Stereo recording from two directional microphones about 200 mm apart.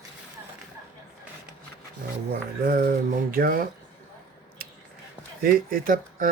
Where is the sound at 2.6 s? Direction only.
45° right (ahead or behind).